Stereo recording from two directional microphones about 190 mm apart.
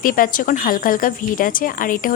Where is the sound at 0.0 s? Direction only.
45° left (ahead or behind).